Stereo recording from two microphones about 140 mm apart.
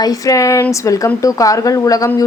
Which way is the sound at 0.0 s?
25° left (ahead or behind).